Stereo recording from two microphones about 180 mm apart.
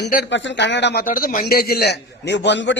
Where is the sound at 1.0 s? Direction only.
50° left (ahead or behind); by 2.7 s 80° left.